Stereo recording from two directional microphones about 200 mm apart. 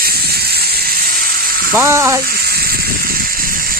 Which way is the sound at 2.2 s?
50° right (ahead or behind).